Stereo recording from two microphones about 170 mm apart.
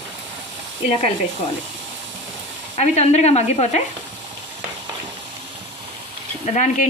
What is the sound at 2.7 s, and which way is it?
Speech, 40° left (ahead or behind).